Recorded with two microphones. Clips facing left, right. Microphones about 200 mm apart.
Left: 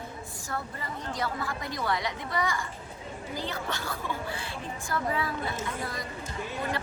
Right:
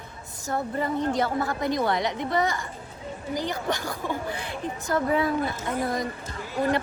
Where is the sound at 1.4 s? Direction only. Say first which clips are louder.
Right 7 dB; 20° right (ahead or behind).